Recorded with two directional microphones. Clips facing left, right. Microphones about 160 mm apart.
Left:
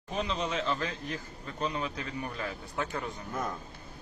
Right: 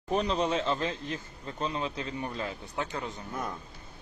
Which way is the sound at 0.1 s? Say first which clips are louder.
Right 5 dB; 40° right (ahead or behind).